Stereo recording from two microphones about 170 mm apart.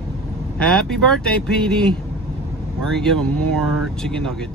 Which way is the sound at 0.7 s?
5° left (ahead or behind).